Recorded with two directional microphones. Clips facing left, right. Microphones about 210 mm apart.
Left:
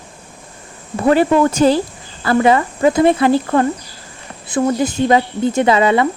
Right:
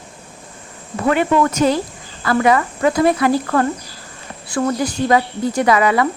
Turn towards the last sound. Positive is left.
turn(degrees=25)  # may be behind; listen again after turning